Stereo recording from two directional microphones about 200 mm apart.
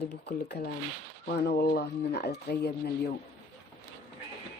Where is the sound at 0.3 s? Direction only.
55° left (ahead or behind).